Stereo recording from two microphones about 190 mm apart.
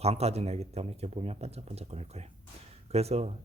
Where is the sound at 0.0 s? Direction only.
35° right (ahead or behind).